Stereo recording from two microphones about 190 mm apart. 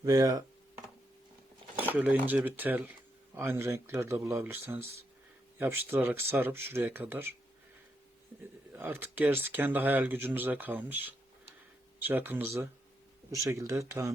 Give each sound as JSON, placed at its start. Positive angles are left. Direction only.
{"t": 0.0, "sound": "speech", "side_deg": -20}
{"t": 2.0, "sound": "speech", "side_deg": -10}
{"t": 8.7, "sound": "speech", "side_deg": -10}